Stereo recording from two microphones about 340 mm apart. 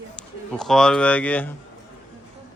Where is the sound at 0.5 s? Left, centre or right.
Centre.